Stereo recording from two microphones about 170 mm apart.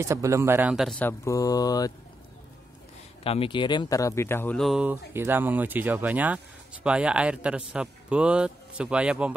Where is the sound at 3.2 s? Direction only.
35° left (ahead or behind).